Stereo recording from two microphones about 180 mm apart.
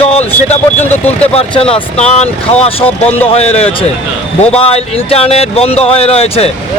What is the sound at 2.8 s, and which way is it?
Speech, 10° left (ahead or behind).